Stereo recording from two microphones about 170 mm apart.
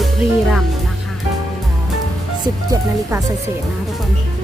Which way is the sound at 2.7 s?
20° right (ahead or behind).